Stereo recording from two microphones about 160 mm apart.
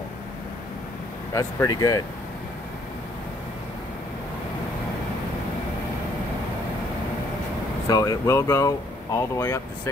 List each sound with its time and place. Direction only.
1.3 s speech: 20° left (ahead or behind)
7.9 s speech: 20° left (ahead or behind)